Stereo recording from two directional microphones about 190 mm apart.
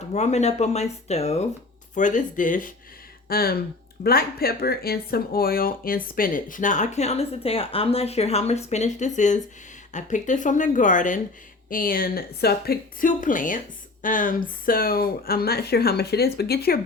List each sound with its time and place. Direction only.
0.1 s speech: 35° left (ahead or behind); by 16.8 s 55° left (ahead or behind)